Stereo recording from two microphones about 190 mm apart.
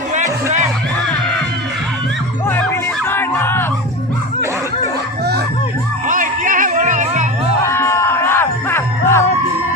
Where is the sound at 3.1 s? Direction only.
10° left (ahead or behind).